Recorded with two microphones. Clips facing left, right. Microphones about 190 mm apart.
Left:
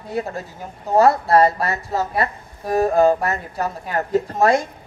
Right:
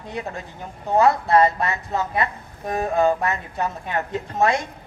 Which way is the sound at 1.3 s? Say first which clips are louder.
Left 2 dB; 40° left (ahead or behind).